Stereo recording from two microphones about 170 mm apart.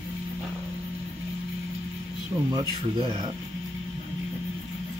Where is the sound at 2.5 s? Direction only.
25° right (ahead or behind).